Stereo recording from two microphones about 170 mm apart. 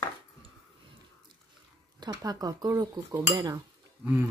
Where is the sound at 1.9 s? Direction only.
20° right (ahead or behind).